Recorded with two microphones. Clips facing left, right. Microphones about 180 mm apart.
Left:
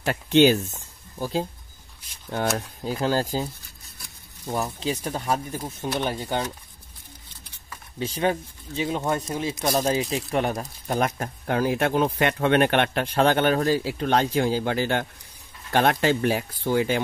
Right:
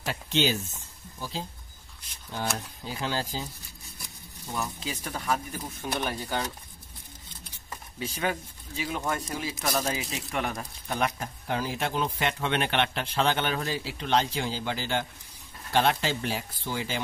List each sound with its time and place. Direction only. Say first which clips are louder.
0.0 s speech: left 10 dB; 55° left (ahead or behind)
2.3 s speech: left 7 dB; 50° left (ahead or behind)
4.5 s speech: left 7 dB; 35° left (ahead or behind)
8.0 s speech: left 6 dB; 30° left (ahead or behind); by 17.0 s 55° left (ahead or behind)